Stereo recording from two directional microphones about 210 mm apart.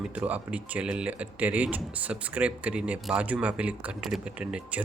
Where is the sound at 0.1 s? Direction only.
5° right (ahead or behind).